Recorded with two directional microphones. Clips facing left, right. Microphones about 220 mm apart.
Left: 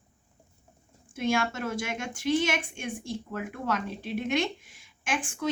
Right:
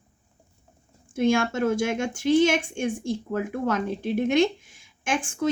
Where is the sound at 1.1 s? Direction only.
50° right (ahead or behind).